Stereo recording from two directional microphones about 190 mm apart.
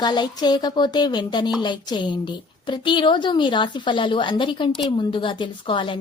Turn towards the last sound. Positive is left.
turn(degrees=25)  # may be behind; listen again after turning